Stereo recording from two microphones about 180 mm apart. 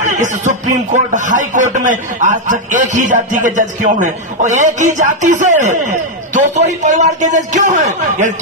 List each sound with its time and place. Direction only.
0.0 s speech: 45° right (ahead or behind)